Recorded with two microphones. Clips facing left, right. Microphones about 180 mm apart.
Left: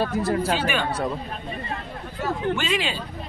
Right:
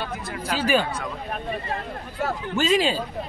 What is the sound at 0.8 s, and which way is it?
Speech, 35° left (ahead or behind).